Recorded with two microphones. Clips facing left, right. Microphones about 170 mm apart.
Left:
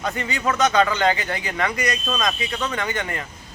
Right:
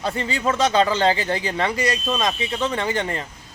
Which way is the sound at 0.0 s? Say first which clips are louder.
Right 1 dB; 30° right (ahead or behind).